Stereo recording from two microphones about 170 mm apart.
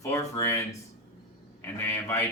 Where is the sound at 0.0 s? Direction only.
15° left (ahead or behind).